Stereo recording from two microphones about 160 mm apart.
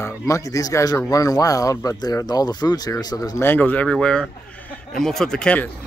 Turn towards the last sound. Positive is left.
turn(degrees=5)  # may be behind; listen again after turning